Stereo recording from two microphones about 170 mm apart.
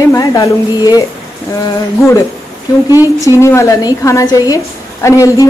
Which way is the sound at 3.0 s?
20° left (ahead or behind).